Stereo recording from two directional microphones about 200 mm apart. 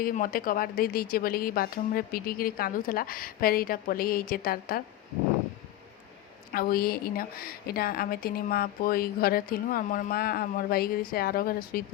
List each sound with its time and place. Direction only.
0.0 s a woman's voice: 45° left (ahead or behind)
6.5 s a woman's voice: 45° left (ahead or behind)